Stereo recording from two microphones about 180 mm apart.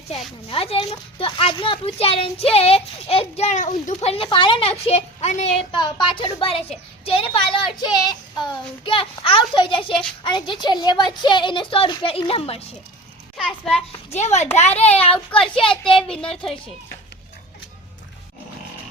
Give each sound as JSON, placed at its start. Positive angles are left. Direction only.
{"t": 0.5, "sound": "a child's voice", "side_deg": 30}
{"t": 5.7, "sound": "a woman's voice", "side_deg": 25}
{"t": 13.3, "sound": "a child's voice", "side_deg": 0}
{"t": 14.1, "sound": "a child's voice", "side_deg": 40}
{"t": 15.1, "sound": "a child's voice", "side_deg": 5}